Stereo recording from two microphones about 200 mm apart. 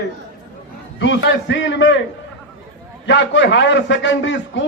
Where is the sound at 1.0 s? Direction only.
65° left (ahead or behind).